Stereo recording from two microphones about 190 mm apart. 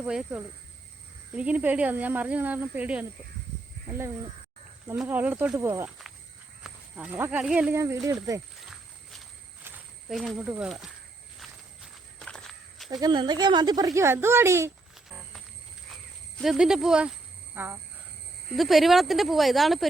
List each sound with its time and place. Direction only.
0.0 s speech: 5° right (ahead or behind)
4.9 s speech: 10° right (ahead or behind)
9.6 s speech: centre (ahead or behind)
11.3 s walk: centre (ahead or behind)
13.0 s speech: 25° right (ahead or behind)
16.4 s speech: centre (ahead or behind)
18.5 s speech: centre (ahead or behind)